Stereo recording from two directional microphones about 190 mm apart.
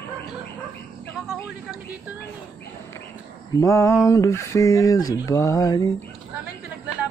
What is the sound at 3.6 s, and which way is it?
Speech, 15° left (ahead or behind).